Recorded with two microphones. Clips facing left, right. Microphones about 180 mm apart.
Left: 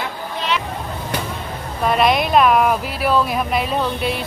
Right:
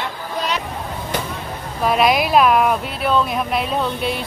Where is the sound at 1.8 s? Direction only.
Centre (ahead or behind).